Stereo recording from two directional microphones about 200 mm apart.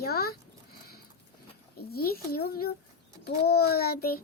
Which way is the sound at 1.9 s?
50° left (ahead or behind).